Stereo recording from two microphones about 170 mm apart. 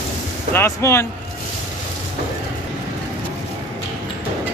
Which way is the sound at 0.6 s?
15° left (ahead or behind).